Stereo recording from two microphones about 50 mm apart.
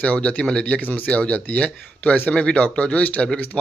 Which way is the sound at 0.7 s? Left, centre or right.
Left.